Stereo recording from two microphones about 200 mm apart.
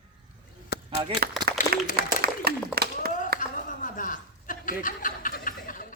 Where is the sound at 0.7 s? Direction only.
55° left (ahead or behind).